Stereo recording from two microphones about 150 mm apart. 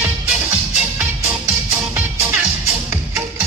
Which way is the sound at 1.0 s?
15° right (ahead or behind).